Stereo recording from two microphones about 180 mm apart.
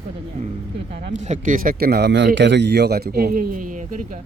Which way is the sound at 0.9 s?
40° right (ahead or behind).